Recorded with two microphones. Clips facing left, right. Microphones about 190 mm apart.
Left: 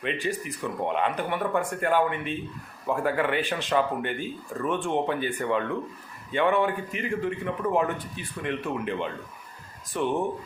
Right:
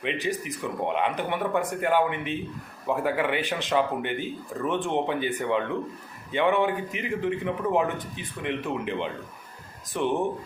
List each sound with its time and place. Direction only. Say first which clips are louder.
0.0 s a man's voice: right 1 dB; 20° right (ahead or behind)